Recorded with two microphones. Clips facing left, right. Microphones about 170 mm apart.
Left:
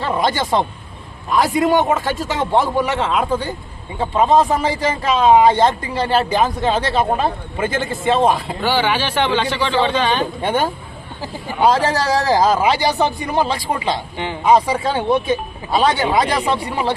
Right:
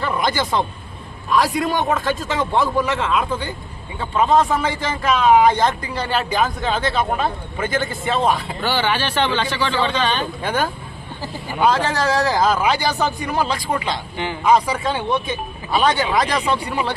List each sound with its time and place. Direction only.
0.0 s a man's voice: 25° left (ahead or behind)
1.6 s a man's voice: 25° left (ahead or behind)
8.6 s speech: 10° left (ahead or behind)
10.4 s a man's voice: 25° left (ahead or behind)
11.6 s speech: 35° left (ahead or behind)
12.5 s a man's voice: 25° left (ahead or behind)